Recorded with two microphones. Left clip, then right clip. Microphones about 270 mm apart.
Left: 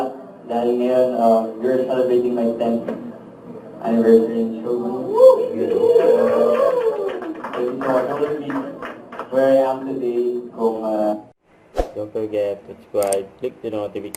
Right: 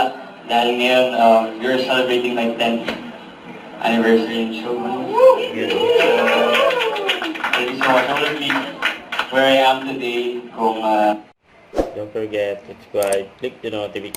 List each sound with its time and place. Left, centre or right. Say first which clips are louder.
0.5 s a woman's voice: right 3 dB; centre
3.8 s a woman's voice: left 1 dB; centre
11.8 s a sound: right 3 dB; centre
12.3 s speech: right 1 dB; centre